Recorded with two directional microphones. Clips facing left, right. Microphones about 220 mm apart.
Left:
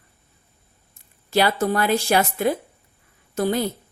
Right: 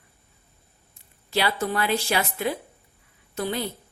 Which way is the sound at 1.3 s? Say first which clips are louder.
Left 5 dB; 45° left (ahead or behind).